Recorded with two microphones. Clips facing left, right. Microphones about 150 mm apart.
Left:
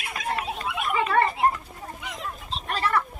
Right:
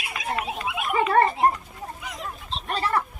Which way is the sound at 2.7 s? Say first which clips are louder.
Even; 35° right (ahead or behind).